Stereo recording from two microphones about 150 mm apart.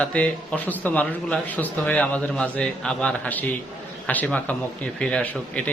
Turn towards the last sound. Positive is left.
turn(degrees=10)  # may be behind; listen again after turning